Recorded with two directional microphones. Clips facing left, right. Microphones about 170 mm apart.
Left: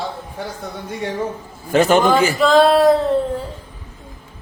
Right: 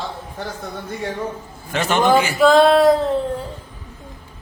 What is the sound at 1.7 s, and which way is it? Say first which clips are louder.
Speech: left 7 dB; 40° left (ahead or behind).